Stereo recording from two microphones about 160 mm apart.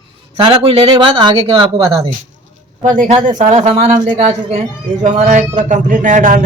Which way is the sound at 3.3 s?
45° right (ahead or behind).